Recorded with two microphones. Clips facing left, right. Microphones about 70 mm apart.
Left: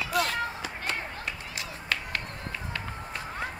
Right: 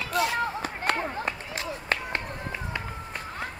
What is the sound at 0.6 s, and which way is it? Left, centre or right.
Run, right.